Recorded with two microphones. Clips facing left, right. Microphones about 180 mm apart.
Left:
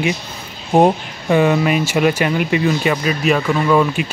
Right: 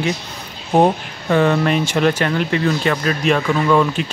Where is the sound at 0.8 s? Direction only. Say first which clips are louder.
Left 2 dB; 10° left (ahead or behind).